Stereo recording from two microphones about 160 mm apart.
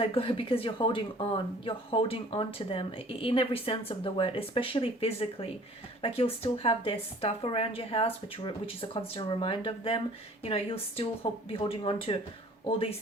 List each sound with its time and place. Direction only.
0.0 s speech: 35° left (ahead or behind)